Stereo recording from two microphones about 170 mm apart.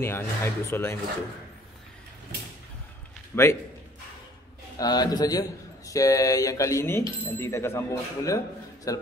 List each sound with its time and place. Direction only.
0.0 s speech: 15° left (ahead or behind)
3.3 s speech: 10° left (ahead or behind)
4.7 s a man's voice: 25° left (ahead or behind)